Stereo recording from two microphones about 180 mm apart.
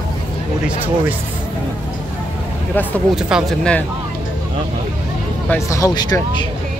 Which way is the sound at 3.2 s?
5° right (ahead or behind).